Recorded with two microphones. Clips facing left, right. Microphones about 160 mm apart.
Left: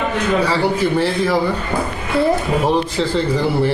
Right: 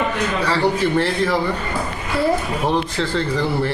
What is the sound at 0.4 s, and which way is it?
Speech, centre (ahead or behind).